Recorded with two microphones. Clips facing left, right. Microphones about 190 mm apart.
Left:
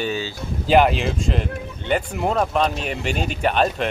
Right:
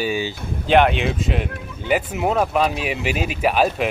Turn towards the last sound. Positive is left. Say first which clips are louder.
# right 1 dB
turn(degrees=-5)  # may be behind; listen again after turning